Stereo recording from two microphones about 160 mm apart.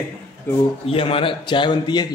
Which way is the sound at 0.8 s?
35° left (ahead or behind).